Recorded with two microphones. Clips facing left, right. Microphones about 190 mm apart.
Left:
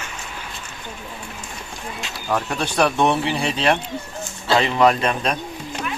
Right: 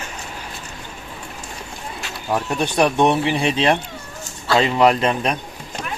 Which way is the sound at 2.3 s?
15° right (ahead or behind).